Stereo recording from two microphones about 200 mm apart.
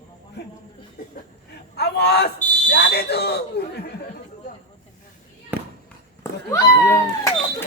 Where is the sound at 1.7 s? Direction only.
55° left (ahead or behind).